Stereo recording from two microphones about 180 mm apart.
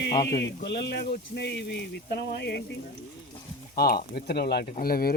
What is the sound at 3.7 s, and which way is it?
Speech, 60° left (ahead or behind).